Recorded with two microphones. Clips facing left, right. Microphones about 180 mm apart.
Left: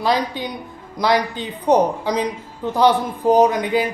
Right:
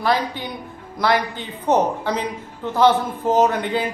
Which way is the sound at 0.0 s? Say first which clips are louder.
Left 1 dB; 15° left (ahead or behind).